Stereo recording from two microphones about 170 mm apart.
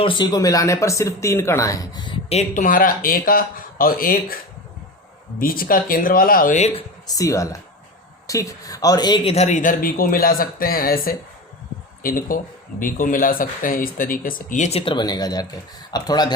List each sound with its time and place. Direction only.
0.0 s speech: 30° left (ahead or behind)
2.6 s speech: 55° left (ahead or behind)
5.4 s speech: 60° left (ahead or behind)
7.1 s speech: 20° left (ahead or behind)